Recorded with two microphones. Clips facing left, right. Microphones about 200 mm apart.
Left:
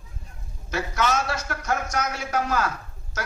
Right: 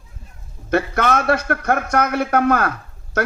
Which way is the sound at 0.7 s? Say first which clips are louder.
Right 7 dB; 60° right (ahead or behind).